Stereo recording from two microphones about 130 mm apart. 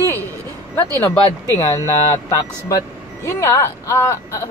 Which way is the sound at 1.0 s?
25° left (ahead or behind).